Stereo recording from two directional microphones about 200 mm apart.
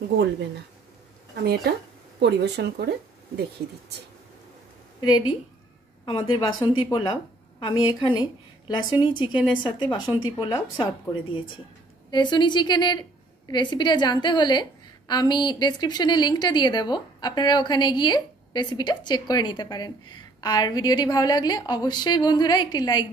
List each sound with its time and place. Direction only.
1.4 s speech: 50° right (ahead or behind)
6.0 s a woman's voice: 25° left (ahead or behind)
12.1 s a woman's voice: 20° left (ahead or behind)